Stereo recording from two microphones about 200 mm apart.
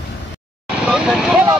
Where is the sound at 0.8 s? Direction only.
5° right (ahead or behind).